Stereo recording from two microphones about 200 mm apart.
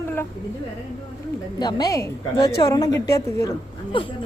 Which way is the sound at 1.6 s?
20° left (ahead or behind).